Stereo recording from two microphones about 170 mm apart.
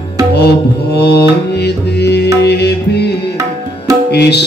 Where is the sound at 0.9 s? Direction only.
75° left (ahead or behind).